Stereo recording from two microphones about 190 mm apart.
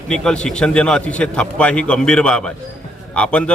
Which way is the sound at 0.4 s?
5° left (ahead or behind).